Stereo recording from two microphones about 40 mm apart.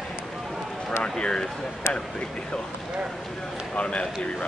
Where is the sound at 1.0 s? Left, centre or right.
Left.